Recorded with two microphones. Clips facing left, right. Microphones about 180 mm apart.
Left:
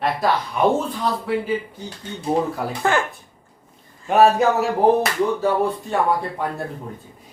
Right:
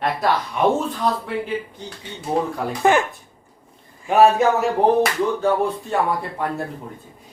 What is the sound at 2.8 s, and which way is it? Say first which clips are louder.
Speech: right 4 dB; 15° right (ahead or behind).